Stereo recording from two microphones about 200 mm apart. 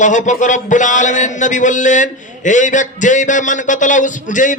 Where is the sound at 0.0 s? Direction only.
40° left (ahead or behind).